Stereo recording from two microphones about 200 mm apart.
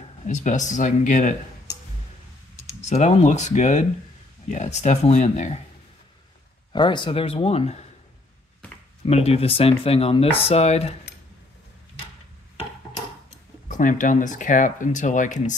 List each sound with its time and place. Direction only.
0.2 s speech: 40° left (ahead or behind)
2.9 s speech: 35° left (ahead or behind)
6.7 s speech: 25° left (ahead or behind)
9.0 s speech: 30° left (ahead or behind)
13.7 s speech: 40° left (ahead or behind)